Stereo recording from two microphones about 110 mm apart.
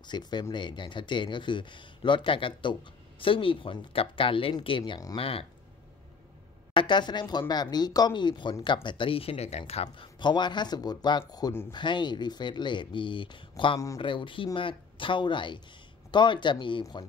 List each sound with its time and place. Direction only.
0.0 s speech: 40° left (ahead or behind)
5.1 s speech: 60° left (ahead or behind)
6.7 s speech: 45° left (ahead or behind); by 10.0 s 60° left (ahead or behind)
10.1 s speech: 45° left (ahead or behind)